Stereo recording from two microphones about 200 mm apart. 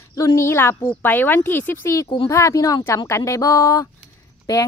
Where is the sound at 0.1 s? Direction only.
15° left (ahead or behind).